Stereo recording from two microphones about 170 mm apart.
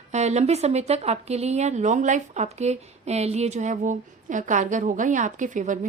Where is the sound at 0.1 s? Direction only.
40° right (ahead or behind).